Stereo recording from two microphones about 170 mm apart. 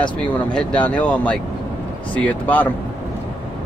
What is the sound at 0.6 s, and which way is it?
Speech, 10° left (ahead or behind).